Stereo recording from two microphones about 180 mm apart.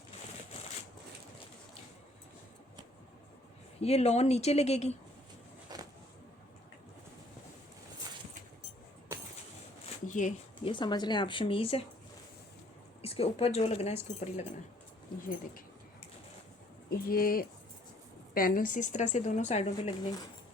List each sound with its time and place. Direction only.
3.8 s a woman's voice: 35° left (ahead or behind)
5.6 s a sound: 20° right (ahead or behind)
10.1 s a sound: 45° left (ahead or behind)
10.6 s speech: 25° left (ahead or behind)
13.0 s a woman's voice: 35° left (ahead or behind)
15.2 s speech: 50° left (ahead or behind)
17.0 s a woman's voice: 55° left (ahead or behind); by 19.9 s 35° left (ahead or behind)